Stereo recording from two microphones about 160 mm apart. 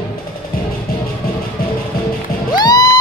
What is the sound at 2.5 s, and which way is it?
Music, 25° left (ahead or behind).